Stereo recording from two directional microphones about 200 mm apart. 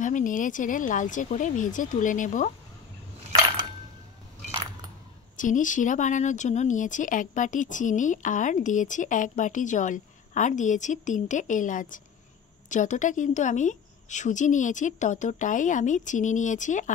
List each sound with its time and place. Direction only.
0.0 s speech: 40° left (ahead or behind)
5.4 s speech: 40° left (ahead or behind)